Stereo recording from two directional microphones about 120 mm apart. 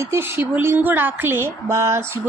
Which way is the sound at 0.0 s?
20° right (ahead or behind).